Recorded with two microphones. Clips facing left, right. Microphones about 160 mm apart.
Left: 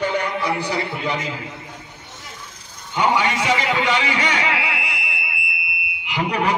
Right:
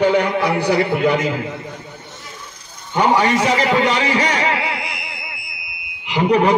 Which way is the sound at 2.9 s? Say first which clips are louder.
Right 4 dB; 40° right (ahead or behind).